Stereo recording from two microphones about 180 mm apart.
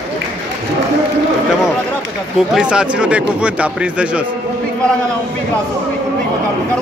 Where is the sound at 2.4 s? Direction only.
5° right (ahead or behind).